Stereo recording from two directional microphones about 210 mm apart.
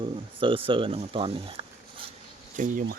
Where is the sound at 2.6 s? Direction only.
40° right (ahead or behind).